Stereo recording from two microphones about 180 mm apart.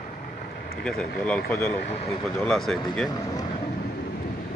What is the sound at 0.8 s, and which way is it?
Speech, 5° left (ahead or behind).